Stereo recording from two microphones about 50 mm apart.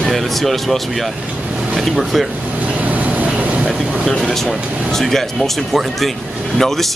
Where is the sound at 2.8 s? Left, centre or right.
Right.